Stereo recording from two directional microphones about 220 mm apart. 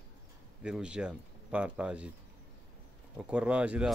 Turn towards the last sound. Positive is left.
turn(degrees=-5)  # may be behind; listen again after turning